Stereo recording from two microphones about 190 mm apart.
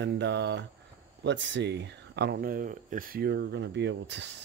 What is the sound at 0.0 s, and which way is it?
Speech, 70° right (ahead or behind).